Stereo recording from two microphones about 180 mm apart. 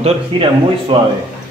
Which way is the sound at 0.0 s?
30° right (ahead or behind).